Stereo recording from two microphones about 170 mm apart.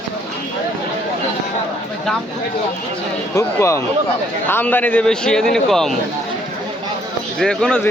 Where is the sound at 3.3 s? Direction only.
15° left (ahead or behind).